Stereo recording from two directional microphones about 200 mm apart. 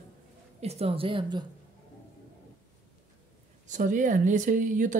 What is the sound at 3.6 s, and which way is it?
A woman's voice, 40° right (ahead or behind).